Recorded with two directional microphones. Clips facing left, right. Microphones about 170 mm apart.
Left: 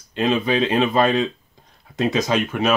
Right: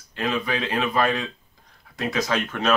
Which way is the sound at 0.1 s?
25° left (ahead or behind).